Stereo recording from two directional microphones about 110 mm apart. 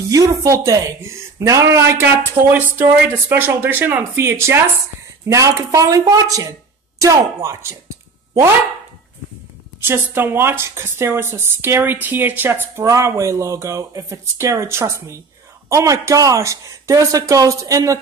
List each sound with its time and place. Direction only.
0.1 s speech: 30° right (ahead or behind)
9.8 s speech: 20° right (ahead or behind)